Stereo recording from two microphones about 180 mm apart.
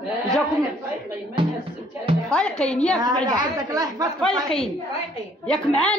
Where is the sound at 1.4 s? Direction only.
30° right (ahead or behind).